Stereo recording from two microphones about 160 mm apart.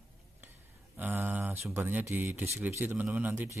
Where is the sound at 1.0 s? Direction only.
10° right (ahead or behind).